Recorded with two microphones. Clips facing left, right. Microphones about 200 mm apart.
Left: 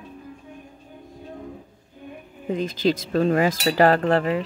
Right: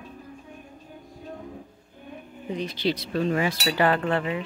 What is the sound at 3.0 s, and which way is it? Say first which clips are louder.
Cutlery: left 5 dB; 45° left (ahead or behind).